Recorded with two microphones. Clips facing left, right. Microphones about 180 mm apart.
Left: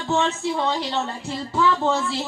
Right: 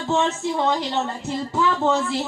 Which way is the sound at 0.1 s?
15° right (ahead or behind).